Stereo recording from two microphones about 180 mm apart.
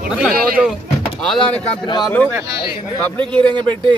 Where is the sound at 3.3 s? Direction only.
5° left (ahead or behind).